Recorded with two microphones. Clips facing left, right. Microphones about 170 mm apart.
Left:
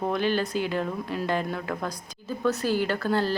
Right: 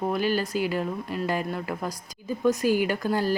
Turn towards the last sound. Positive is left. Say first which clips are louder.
# even
turn(degrees=-10)  # may be behind; listen again after turning